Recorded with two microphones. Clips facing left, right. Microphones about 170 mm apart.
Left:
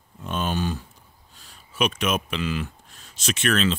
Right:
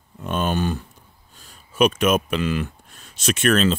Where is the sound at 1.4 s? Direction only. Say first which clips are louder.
Right 7 dB; 45° right (ahead or behind).